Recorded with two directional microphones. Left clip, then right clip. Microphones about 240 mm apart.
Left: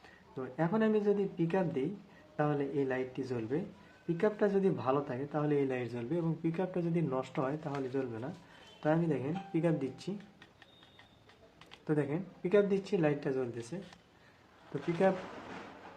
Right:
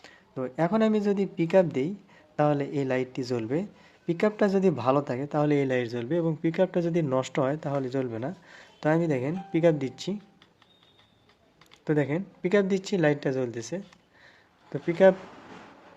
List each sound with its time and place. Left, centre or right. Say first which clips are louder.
0.0 s speech: right 9 dB; right
11.9 s speech: right 7 dB; right